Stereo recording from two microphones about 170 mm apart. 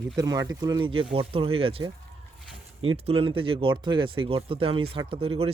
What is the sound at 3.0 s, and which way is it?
Speech, 35° right (ahead or behind).